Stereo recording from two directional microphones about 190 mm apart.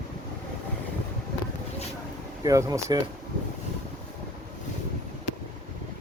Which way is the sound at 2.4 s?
20° right (ahead or behind).